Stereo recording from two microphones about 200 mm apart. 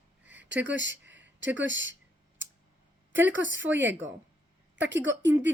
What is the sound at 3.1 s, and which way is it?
A woman's voice, 70° right (ahead or behind).